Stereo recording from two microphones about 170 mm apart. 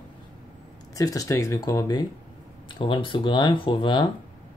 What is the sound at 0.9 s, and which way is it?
Speech, 20° left (ahead or behind).